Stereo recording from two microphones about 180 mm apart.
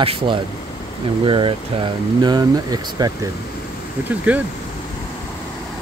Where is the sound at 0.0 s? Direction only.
30° right (ahead or behind).